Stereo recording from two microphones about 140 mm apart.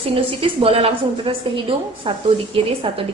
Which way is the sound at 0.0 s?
40° right (ahead or behind).